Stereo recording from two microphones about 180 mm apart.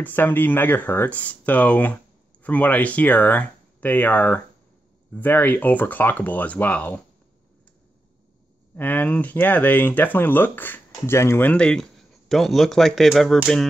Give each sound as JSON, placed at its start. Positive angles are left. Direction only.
{"t": 0.0, "sound": "speech", "side_deg": 10}
{"t": 8.7, "sound": "speech", "side_deg": 10}